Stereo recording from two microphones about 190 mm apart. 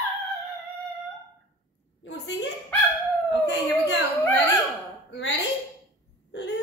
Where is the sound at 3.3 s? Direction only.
65° left (ahead or behind).